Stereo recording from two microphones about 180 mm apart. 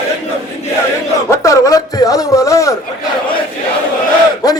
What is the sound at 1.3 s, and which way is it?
Speech, 15° left (ahead or behind).